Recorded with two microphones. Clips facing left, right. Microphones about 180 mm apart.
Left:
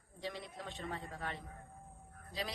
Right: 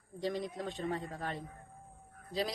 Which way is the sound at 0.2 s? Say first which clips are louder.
Right 8 dB; 40° right (ahead or behind).